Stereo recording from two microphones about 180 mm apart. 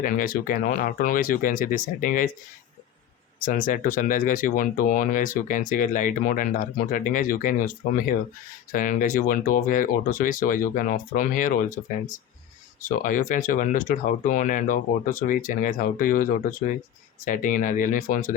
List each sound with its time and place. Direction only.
0.0 s speech: 50° left (ahead or behind)
3.4 s speech: 50° left (ahead or behind)